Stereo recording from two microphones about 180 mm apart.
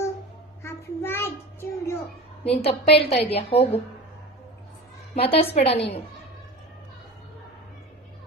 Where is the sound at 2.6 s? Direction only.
35° left (ahead or behind).